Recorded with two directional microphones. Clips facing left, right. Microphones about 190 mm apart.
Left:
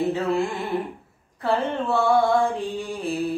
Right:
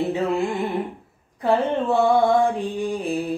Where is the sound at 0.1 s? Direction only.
20° right (ahead or behind).